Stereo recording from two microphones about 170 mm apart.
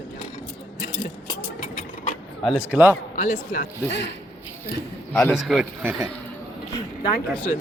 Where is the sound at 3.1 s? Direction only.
50° left (ahead or behind); by 4.1 s 70° left (ahead or behind).